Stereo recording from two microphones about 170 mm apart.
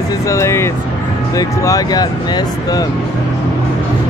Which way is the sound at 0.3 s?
15° left (ahead or behind).